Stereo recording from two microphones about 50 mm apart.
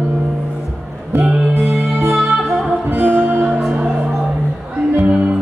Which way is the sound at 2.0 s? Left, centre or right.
Centre.